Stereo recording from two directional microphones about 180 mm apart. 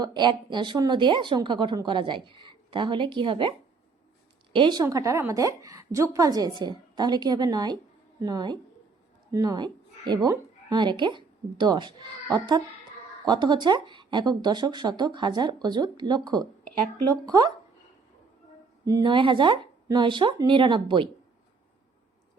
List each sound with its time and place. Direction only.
0.0 s a woman's voice: 25° right (ahead or behind)
4.5 s a woman's voice: 25° right (ahead or behind)
18.9 s a woman's voice: 20° right (ahead or behind)